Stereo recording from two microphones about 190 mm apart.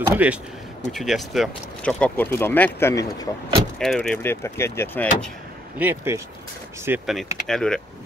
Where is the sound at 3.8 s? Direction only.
5° left (ahead or behind).